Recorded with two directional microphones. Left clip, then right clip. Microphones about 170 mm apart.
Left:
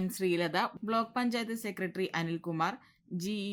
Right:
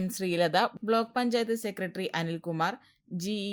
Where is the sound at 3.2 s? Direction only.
20° right (ahead or behind).